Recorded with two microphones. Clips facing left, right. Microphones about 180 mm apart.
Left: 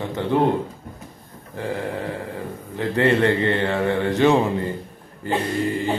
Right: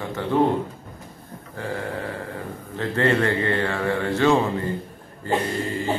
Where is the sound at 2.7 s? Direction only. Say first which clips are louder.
Left 2 dB; 15° left (ahead or behind).